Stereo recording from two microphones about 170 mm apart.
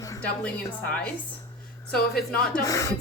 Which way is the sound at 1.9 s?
65° left (ahead or behind).